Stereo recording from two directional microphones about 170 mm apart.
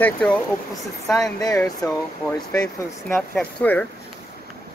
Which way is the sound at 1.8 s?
15° left (ahead or behind).